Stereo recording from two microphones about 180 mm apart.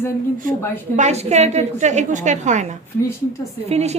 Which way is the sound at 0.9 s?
40° right (ahead or behind).